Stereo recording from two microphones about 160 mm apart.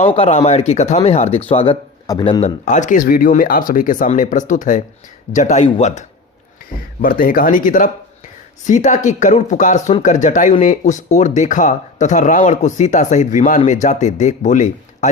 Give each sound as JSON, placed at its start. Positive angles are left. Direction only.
{"t": 0.0, "sound": "speech", "side_deg": 35}
{"t": 2.1, "sound": "speech", "side_deg": 25}
{"t": 2.4, "sound": "speech", "side_deg": 50}
{"t": 7.0, "sound": "speech", "side_deg": 60}